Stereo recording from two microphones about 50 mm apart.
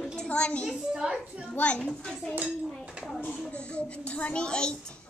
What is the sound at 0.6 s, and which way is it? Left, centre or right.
Speech, centre.